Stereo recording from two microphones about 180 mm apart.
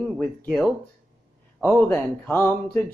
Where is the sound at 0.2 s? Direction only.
5° left (ahead or behind).